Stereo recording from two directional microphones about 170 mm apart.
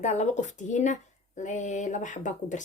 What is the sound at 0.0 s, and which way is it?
Speech, 45° left (ahead or behind).